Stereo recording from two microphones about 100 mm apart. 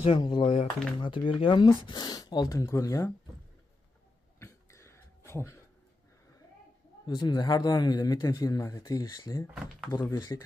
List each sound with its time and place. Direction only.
0.0 s speech: 60° left (ahead or behind)
1.9 s speech: 40° left (ahead or behind)
4.4 s throat clearing: 30° left (ahead or behind)
7.1 s speech: 45° left (ahead or behind)